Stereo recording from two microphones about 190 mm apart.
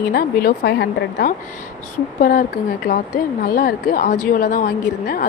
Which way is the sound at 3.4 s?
50° left (ahead or behind).